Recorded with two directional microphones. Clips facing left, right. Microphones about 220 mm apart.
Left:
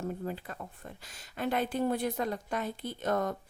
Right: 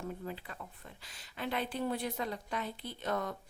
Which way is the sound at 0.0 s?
45° left (ahead or behind).